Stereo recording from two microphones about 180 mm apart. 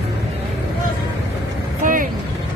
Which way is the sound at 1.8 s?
50° right (ahead or behind).